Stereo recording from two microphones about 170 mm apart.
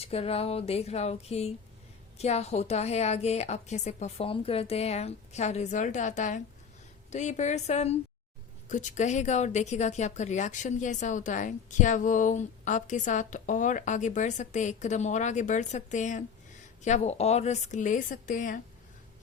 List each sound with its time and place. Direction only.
0.0 s a woman's voice: 35° left (ahead or behind)